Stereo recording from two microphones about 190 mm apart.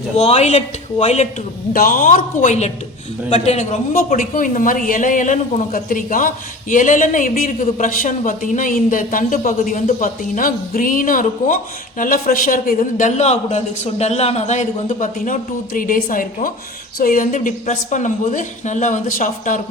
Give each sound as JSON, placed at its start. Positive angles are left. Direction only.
{"t": 0.2, "sound": "a woman's voice", "side_deg": 35}
{"t": 1.7, "sound": "a woman's voice", "side_deg": 50}